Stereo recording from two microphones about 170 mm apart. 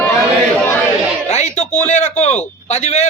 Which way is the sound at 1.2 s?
40° left (ahead or behind).